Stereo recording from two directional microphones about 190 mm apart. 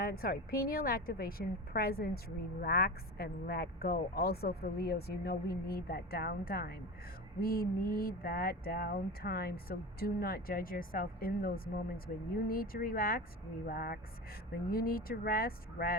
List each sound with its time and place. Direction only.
0.0 s a woman's voice: 55° left (ahead or behind)